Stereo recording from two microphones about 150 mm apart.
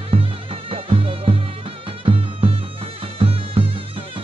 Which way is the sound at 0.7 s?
40° right (ahead or behind).